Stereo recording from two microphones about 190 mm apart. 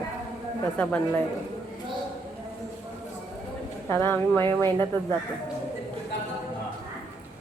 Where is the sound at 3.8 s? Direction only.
10° left (ahead or behind).